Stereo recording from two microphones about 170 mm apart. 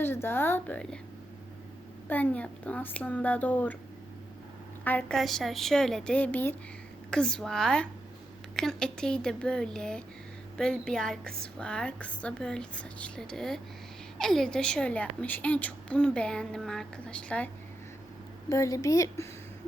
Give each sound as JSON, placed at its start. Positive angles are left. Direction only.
{"t": 0.0, "sound": "a woman's voice", "side_deg": 15}
{"t": 2.0, "sound": "a woman's voice", "side_deg": 10}
{"t": 4.8, "sound": "a woman's voice", "side_deg": 10}
{"t": 18.4, "sound": "a woman's voice", "side_deg": 20}